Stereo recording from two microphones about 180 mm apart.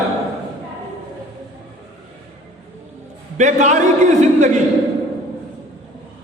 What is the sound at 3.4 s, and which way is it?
Speech, 40° right (ahead or behind).